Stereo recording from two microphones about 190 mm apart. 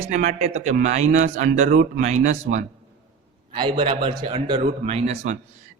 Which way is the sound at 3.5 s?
25° right (ahead or behind).